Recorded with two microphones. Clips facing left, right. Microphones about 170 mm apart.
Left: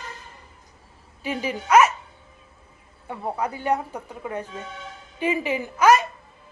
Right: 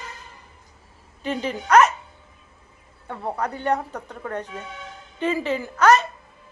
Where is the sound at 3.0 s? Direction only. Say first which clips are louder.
Even; 10° left (ahead or behind).